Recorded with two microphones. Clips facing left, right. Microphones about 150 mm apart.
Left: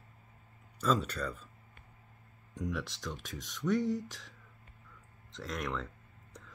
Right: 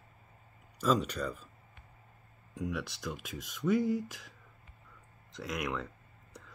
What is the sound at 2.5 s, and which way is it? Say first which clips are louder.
Speech: right 1 dB; 5° right (ahead or behind).